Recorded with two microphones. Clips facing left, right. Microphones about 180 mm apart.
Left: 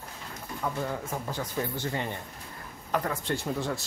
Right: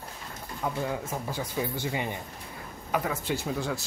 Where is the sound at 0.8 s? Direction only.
10° right (ahead or behind).